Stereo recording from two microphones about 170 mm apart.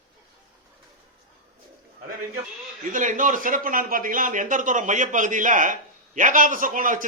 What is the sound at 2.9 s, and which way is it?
A man's voice, 50° right (ahead or behind).